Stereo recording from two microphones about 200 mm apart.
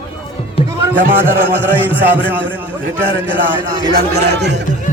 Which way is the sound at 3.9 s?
55° right (ahead or behind).